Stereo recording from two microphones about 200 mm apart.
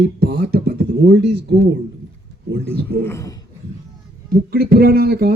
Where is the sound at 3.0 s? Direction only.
15° left (ahead or behind).